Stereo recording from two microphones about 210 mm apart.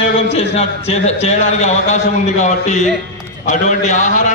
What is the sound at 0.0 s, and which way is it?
A man's voice, 30° left (ahead or behind).